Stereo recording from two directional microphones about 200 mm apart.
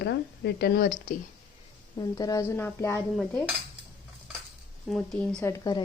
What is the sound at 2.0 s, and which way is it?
A woman's voice, 20° left (ahead or behind).